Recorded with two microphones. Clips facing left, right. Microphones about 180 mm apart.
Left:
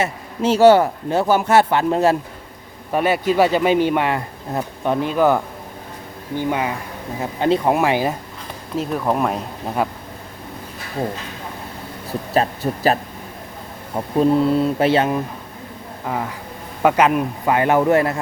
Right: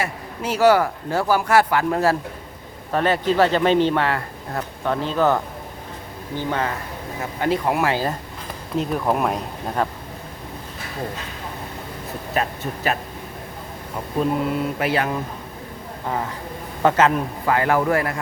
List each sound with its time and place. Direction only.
0.0 s a man's voice: 25° left (ahead or behind)
2.9 s a man's voice: 10° left (ahead or behind)
7.2 s a man's voice: 25° left (ahead or behind)
8.8 s speech: centre (ahead or behind)
12.3 s speech: 35° left (ahead or behind)
14.2 s a man's voice: 30° left (ahead or behind)
16.8 s a man's voice: 15° left (ahead or behind)